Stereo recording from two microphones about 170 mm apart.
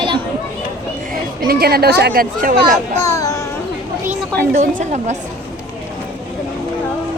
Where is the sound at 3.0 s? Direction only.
20° left (ahead or behind).